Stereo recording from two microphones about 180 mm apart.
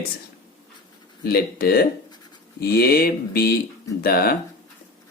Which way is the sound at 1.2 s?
60° left (ahead or behind).